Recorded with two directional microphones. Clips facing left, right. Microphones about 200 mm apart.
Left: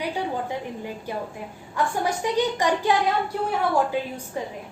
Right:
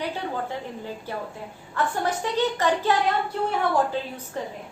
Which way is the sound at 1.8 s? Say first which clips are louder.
Left 1 dB; 15° left (ahead or behind).